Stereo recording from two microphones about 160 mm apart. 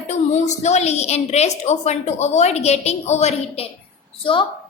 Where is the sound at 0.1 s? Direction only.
45° left (ahead or behind).